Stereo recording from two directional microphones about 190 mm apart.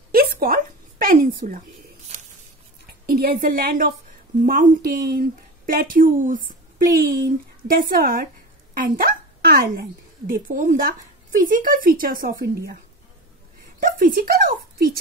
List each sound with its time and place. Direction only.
0.1 s a sound: 50° right (ahead or behind)
3.1 s a woman's voice: 50° right (ahead or behind)
13.7 s speech: 45° right (ahead or behind)